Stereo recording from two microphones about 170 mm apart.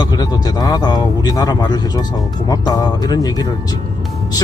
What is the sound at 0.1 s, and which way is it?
Speech, 20° left (ahead or behind).